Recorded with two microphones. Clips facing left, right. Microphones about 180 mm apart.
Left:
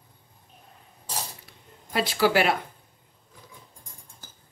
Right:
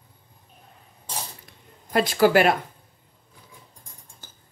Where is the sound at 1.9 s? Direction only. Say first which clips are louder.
Right 5 dB; 50° right (ahead or behind).